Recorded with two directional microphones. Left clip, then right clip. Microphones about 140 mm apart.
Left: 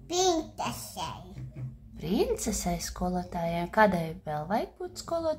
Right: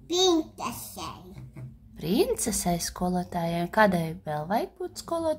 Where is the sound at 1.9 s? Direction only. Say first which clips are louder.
Right 3 dB; 20° right (ahead or behind).